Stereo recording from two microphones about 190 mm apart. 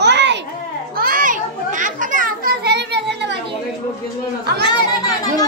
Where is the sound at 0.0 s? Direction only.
65° right (ahead or behind).